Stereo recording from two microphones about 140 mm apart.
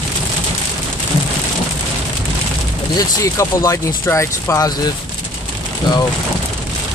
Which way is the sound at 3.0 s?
25° left (ahead or behind).